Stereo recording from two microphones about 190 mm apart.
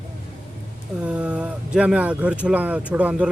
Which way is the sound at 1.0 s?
5° right (ahead or behind).